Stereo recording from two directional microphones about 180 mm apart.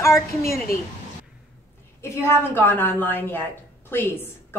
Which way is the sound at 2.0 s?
15° left (ahead or behind).